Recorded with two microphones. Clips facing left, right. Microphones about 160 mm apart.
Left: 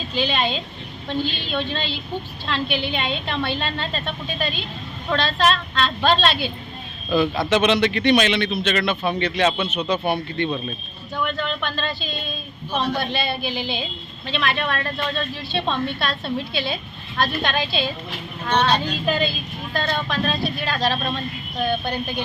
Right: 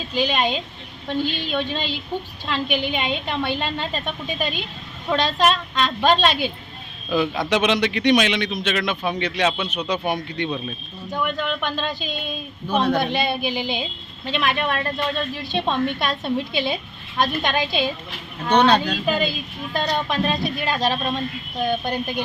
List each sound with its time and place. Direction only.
0.1 s a woman's voice: 10° right (ahead or behind)
19.0 s a woman's voice: 10° right (ahead or behind)